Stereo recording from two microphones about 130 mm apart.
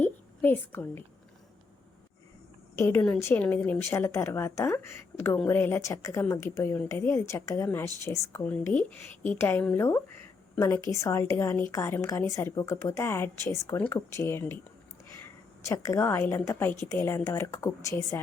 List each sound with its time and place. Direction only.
0.0 s a sound: 15° left (ahead or behind)
2.7 s a woman's voice: 20° left (ahead or behind)
15.6 s speech: 20° left (ahead or behind)